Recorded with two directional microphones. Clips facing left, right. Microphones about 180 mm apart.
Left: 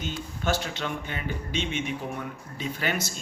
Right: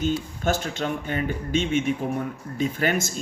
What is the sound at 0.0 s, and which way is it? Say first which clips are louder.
Speech: right 6 dB; 45° right (ahead or behind).